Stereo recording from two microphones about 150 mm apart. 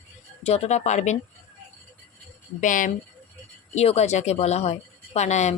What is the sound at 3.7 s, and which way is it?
A woman's voice, 45° left (ahead or behind).